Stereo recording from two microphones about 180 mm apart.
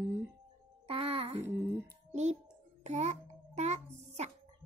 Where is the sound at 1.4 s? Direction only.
10° right (ahead or behind).